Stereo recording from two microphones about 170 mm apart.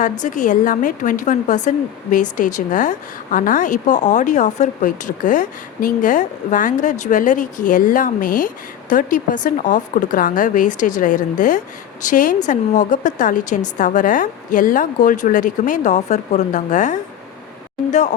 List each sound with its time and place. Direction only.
0.0 s speech: 50° left (ahead or behind)